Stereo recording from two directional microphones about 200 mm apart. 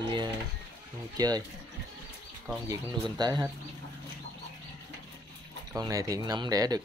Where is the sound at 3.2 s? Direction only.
20° right (ahead or behind).